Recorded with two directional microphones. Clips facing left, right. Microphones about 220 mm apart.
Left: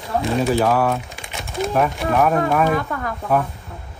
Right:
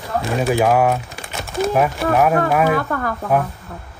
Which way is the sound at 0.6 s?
15° right (ahead or behind).